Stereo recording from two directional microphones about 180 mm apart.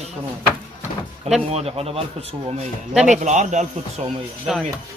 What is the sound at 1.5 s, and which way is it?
Speech, 35° right (ahead or behind).